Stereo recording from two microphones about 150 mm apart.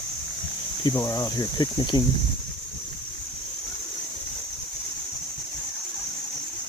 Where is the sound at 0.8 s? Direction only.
25° left (ahead or behind).